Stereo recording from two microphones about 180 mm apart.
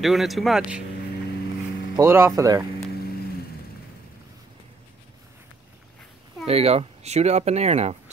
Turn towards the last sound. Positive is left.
turn(degrees=-35)  # may be behind; listen again after turning